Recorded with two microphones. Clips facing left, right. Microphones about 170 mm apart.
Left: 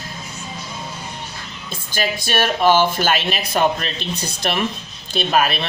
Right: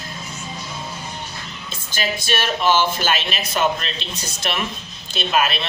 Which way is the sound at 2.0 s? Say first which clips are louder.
Left 3 dB; 50° left (ahead or behind).